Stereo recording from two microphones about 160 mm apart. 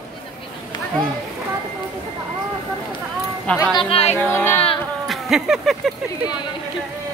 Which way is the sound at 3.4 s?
5° left (ahead or behind).